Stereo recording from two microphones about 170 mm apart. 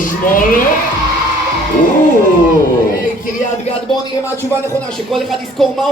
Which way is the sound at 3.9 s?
30° left (ahead or behind).